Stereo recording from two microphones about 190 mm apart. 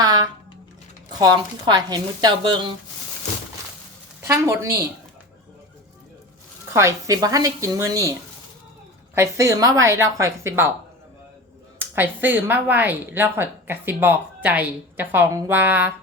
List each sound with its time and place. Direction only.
0.0 s a sound: 20° right (ahead or behind)
1.2 s speech: 20° right (ahead or behind)
4.2 s a woman's voice: 15° right (ahead or behind)
6.7 s speech: 15° right (ahead or behind)
9.1 s speech: 15° right (ahead or behind)
11.8 s speech: 10° right (ahead or behind)